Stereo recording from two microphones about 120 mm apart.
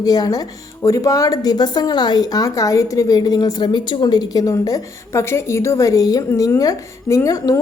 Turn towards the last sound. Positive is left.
turn(degrees=30)  # may be behind; listen again after turning